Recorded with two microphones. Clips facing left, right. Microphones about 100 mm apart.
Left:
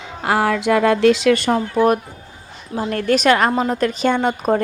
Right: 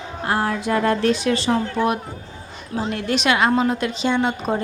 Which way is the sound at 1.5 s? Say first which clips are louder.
Left 4 dB; 45° left (ahead or behind).